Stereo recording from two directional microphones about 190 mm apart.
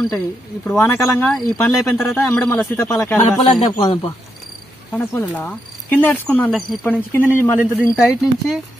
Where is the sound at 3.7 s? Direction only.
20° left (ahead or behind).